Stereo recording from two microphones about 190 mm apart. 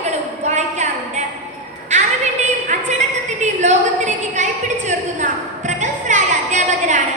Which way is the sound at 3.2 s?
40° right (ahead or behind).